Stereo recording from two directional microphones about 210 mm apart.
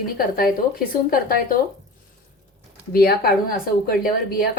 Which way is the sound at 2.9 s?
45° left (ahead or behind).